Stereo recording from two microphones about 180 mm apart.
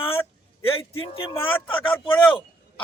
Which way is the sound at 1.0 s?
30° left (ahead or behind).